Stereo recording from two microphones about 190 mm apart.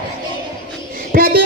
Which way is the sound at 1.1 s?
50° right (ahead or behind).